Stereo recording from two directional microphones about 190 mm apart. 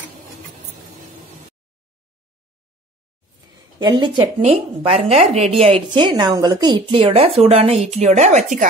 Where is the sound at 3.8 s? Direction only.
25° right (ahead or behind).